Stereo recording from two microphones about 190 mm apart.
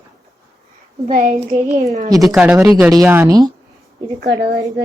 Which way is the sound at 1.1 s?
45° right (ahead or behind).